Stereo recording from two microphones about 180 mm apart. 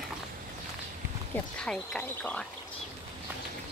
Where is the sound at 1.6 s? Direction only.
5° left (ahead or behind).